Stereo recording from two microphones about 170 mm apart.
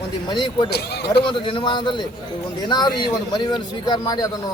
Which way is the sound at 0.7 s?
75° left (ahead or behind).